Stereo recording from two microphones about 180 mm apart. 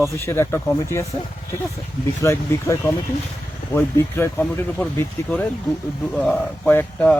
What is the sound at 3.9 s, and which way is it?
Speech, 15° left (ahead or behind).